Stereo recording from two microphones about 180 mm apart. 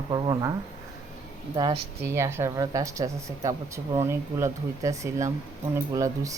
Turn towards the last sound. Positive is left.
turn(degrees=-20)  # may be behind; listen again after turning